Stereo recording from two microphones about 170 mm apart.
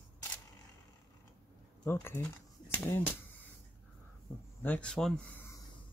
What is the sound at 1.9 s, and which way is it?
Speech, 15° left (ahead or behind).